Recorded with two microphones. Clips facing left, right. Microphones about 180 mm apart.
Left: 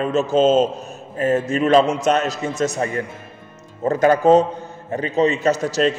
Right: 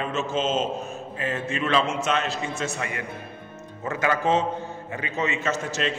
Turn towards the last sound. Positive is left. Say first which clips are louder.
# left 9 dB
turn(degrees=40)  # may be behind; listen again after turning